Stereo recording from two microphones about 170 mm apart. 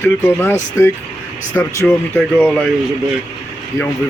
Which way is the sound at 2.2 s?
5° left (ahead or behind).